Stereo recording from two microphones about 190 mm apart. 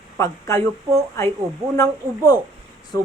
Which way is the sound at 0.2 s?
15° left (ahead or behind).